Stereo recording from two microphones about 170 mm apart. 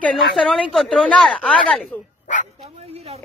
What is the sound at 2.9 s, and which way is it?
Speech, 35° right (ahead or behind).